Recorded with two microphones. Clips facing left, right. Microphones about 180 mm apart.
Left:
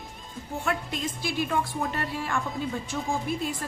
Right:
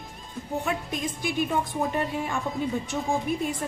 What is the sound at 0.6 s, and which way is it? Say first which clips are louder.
A woman's voice: left 3 dB; 15° right (ahead or behind).